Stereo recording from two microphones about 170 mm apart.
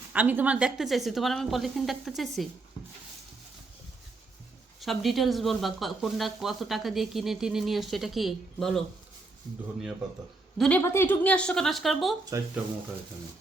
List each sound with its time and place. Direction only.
0.1 s speech: 10° right (ahead or behind)
4.8 s speech: centre (ahead or behind)
10.6 s speech: 10° left (ahead or behind)
12.3 s speech: 20° right (ahead or behind)